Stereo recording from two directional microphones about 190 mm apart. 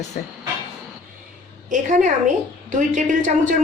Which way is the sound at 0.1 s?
50° left (ahead or behind).